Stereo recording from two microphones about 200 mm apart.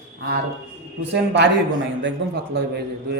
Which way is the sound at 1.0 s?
60° right (ahead or behind).